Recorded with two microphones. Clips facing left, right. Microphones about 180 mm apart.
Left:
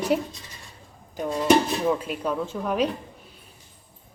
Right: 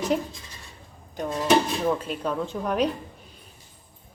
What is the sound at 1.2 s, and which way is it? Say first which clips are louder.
A woman's voice: left 2 dB; centre (ahead or behind).